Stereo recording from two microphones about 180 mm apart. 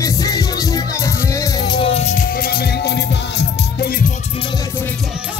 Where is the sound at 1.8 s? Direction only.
35° left (ahead or behind); by 3.9 s 65° left (ahead or behind).